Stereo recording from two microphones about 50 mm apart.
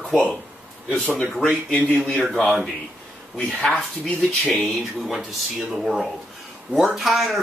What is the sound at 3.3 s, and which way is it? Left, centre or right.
Speech, centre.